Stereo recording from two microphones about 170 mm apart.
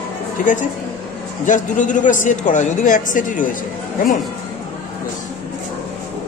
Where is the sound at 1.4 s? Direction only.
50° left (ahead or behind).